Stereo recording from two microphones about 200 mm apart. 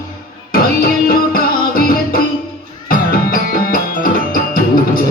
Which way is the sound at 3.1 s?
45° left (ahead or behind).